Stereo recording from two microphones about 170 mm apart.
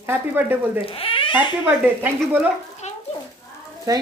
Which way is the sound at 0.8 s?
35° left (ahead or behind).